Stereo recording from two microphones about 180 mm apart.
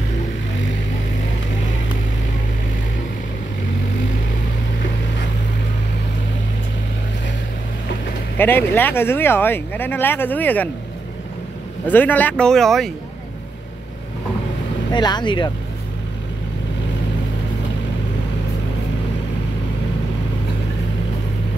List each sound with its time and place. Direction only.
8.4 s speech: 10° left (ahead or behind)
11.9 s speech: 10° left (ahead or behind)
14.9 s speech: 25° left (ahead or behind)